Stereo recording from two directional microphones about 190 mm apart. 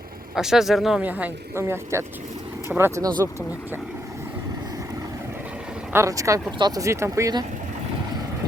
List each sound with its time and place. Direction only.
0.3 s speech: centre (ahead or behind)
5.9 s speech: 15° right (ahead or behind)